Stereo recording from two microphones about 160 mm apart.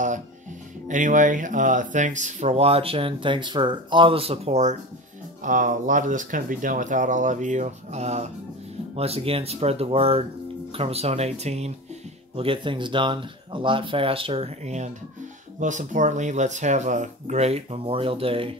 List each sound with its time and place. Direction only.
0.8 s speech: 50° right (ahead or behind)
12.4 s speech: 35° right (ahead or behind)